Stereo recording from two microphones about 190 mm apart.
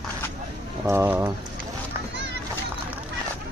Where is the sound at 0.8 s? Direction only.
10° right (ahead or behind).